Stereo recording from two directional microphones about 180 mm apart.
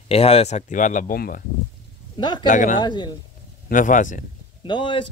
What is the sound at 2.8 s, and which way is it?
Speech, 25° left (ahead or behind).